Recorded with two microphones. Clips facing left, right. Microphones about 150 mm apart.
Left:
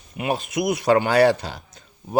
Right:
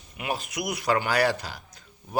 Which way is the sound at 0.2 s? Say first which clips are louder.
Left 7 dB; 25° left (ahead or behind).